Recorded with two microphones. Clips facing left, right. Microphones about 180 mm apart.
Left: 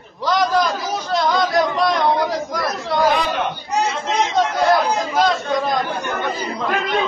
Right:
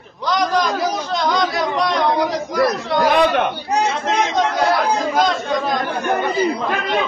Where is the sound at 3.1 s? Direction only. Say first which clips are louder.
Right 5 dB; 60° right (ahead or behind).